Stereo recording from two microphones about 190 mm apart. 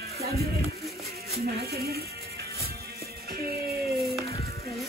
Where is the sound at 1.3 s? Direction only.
55° right (ahead or behind).